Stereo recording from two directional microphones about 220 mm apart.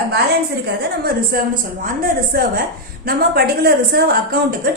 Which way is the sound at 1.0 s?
45° right (ahead or behind).